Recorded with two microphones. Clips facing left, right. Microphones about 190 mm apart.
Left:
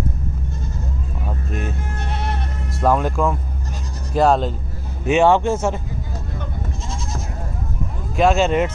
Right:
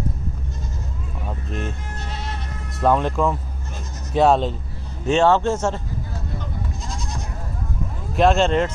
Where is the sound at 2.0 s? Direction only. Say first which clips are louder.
Left 6 dB; 60° left (ahead or behind).